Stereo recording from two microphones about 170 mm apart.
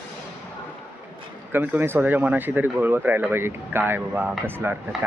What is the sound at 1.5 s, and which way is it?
Speech, 10° right (ahead or behind).